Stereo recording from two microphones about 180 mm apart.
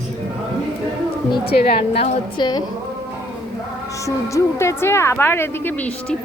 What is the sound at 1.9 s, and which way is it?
Speech, 25° left (ahead or behind).